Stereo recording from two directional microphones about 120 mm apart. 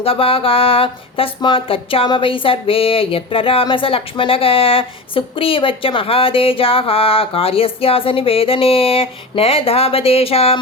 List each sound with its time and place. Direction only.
0.0 s speech: 50° left (ahead or behind)